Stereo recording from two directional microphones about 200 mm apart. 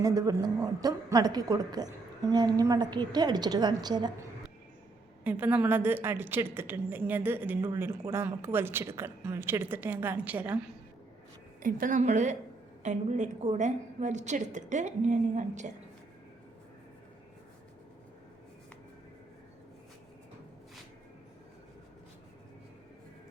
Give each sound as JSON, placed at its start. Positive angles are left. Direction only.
{"t": 0.0, "sound": "a woman's voice", "side_deg": -15}
{"t": 5.2, "sound": "a woman's voice", "side_deg": -10}
{"t": 11.6, "sound": "a woman's voice", "side_deg": -40}